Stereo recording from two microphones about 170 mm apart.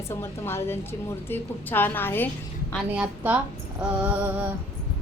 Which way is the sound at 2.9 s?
5° right (ahead or behind).